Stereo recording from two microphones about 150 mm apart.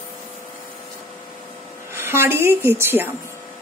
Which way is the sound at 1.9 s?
15° right (ahead or behind).